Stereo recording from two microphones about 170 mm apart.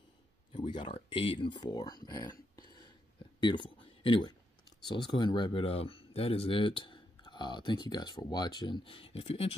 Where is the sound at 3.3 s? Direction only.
25° left (ahead or behind).